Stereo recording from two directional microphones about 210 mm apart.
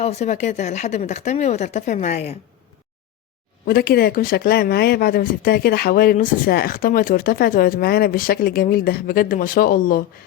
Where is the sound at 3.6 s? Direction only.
45° left (ahead or behind).